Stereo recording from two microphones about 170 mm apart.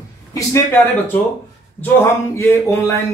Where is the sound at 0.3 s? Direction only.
15° left (ahead or behind).